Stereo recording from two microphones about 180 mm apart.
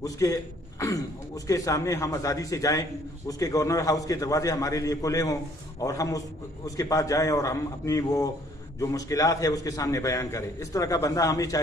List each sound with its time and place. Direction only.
0.0 s a man's voice: 20° left (ahead or behind)